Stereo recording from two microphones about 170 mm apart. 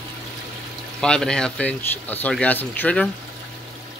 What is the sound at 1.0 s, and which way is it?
Speech, 5° left (ahead or behind).